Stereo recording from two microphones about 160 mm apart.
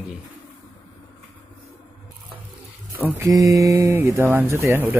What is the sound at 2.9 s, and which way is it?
Speech, 15° right (ahead or behind).